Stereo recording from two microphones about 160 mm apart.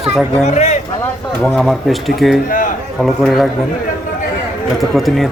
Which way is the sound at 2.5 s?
60° left (ahead or behind).